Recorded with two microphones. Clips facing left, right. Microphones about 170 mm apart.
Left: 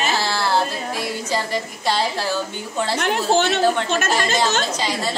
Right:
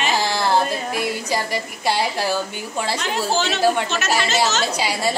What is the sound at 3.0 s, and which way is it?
Speech, 60° left (ahead or behind).